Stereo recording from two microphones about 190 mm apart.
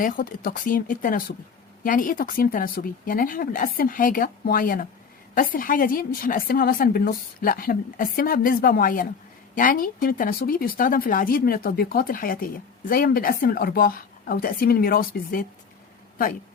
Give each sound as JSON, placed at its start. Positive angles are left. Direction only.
{"t": 0.0, "sound": "a woman's voice", "side_deg": 50}